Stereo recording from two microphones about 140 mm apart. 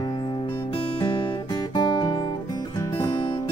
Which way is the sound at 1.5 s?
30° left (ahead or behind).